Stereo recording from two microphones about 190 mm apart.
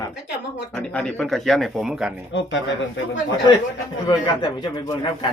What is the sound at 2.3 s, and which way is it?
Speech, 70° left (ahead or behind).